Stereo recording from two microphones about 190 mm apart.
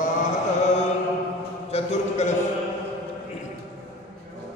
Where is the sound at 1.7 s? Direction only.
35° left (ahead or behind).